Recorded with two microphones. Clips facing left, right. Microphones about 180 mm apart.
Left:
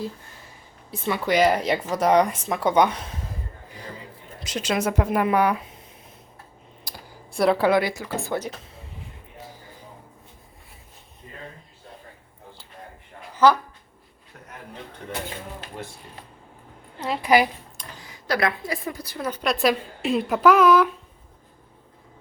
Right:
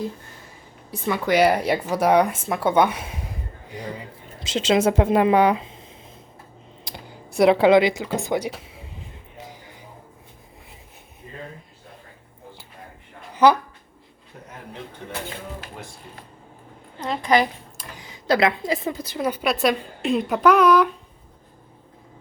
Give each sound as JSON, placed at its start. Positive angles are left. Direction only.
{"t": 1.1, "sound": "speech", "side_deg": -10}
{"t": 4.4, "sound": "speech", "side_deg": -25}
{"t": 13.3, "sound": "speech", "side_deg": -15}
{"t": 17.0, "sound": "a woman's voice", "side_deg": 10}
{"t": 18.0, "sound": "a woman's voice", "side_deg": -20}